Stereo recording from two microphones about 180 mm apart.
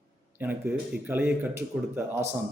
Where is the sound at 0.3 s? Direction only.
10° right (ahead or behind).